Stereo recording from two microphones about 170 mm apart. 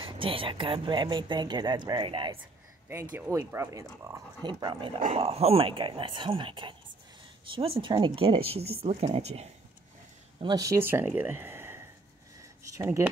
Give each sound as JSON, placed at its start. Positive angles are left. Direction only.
{"t": 0.0, "sound": "speech", "side_deg": -30}
{"t": 2.9, "sound": "speech", "side_deg": -15}
{"t": 10.4, "sound": "speech", "side_deg": -20}